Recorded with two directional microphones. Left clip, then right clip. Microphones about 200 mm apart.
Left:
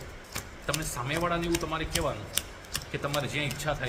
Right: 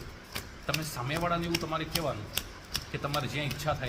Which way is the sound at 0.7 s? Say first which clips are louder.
Left 2 dB; 10° left (ahead or behind).